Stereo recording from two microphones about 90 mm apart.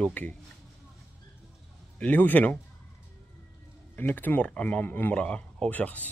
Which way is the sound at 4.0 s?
20° left (ahead or behind).